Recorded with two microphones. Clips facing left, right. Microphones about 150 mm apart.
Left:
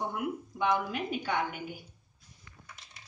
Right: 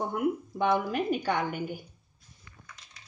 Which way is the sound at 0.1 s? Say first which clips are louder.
Right 6 dB; 45° right (ahead or behind).